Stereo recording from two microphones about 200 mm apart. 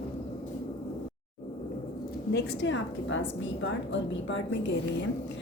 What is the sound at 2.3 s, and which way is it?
A woman's voice, 65° left (ahead or behind).